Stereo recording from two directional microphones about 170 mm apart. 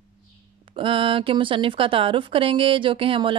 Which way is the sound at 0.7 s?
30° right (ahead or behind).